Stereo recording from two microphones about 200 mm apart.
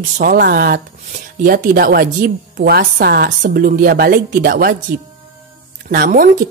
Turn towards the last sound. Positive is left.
turn(degrees=-45)  # may be behind; listen again after turning